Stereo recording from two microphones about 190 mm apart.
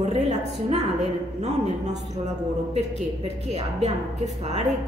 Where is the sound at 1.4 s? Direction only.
35° right (ahead or behind).